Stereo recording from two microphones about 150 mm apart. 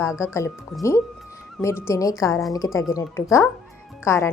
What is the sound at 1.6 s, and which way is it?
A woman's voice, 20° left (ahead or behind).